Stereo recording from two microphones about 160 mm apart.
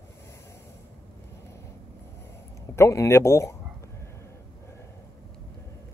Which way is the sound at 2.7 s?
20° left (ahead or behind).